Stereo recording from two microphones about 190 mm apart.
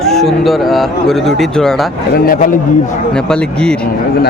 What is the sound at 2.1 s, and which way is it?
Speech, 50° left (ahead or behind).